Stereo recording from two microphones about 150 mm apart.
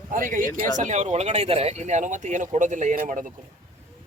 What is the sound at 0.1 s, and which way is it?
Speech, 65° right (ahead or behind).